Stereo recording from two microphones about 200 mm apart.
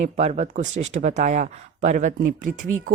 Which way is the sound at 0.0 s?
35° right (ahead or behind).